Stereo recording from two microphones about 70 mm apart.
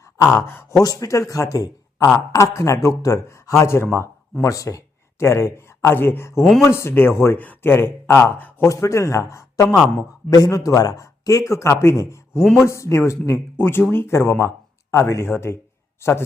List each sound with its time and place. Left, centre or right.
0.3 s speech: left
0.8 s speech: left
2.1 s speech: left
3.6 s speech: left
4.4 s speech: left
5.2 s speech: left
6.4 s speech: centre
6.7 s speech: left
8.6 s speech: left
12.4 s speech: centre
12.6 s speech: left